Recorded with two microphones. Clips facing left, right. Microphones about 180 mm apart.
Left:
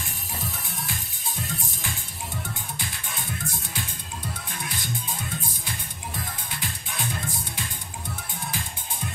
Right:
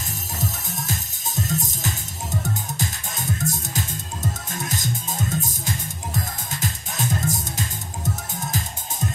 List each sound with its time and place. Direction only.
0.4 s music: 45° right (ahead or behind)